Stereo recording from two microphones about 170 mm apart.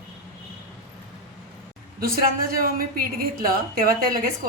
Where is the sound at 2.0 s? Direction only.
60° right (ahead or behind).